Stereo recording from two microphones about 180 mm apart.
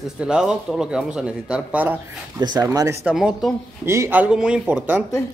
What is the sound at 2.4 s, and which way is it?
Speech, 20° right (ahead or behind).